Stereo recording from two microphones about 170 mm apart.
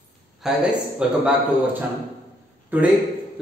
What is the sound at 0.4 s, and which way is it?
A man's voice, 5° right (ahead or behind).